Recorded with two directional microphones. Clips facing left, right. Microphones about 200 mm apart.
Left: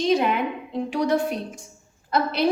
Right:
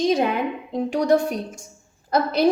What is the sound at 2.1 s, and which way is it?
Speech, 40° right (ahead or behind).